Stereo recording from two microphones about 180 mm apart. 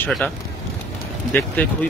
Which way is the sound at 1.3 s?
10° left (ahead or behind).